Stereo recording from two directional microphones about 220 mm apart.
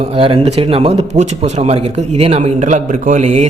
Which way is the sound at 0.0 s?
25° right (ahead or behind).